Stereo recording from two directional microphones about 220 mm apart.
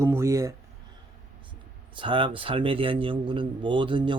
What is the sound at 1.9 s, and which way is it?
A man's voice, 20° right (ahead or behind).